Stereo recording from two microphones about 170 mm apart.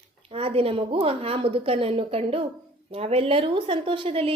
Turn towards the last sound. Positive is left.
turn(degrees=-35)  # may be behind; listen again after turning